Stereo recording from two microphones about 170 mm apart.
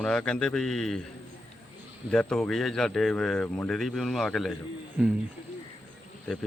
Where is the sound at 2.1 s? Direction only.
5° left (ahead or behind).